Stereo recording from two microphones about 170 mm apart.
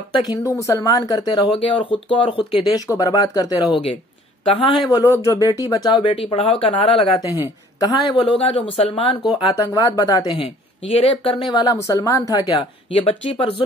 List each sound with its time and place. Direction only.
0.1 s speech: 25° left (ahead or behind)
12.9 s speech: 35° left (ahead or behind)